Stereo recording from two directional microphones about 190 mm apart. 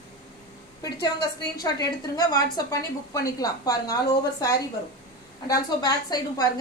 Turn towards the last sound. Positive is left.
turn(degrees=20)  # may be behind; listen again after turning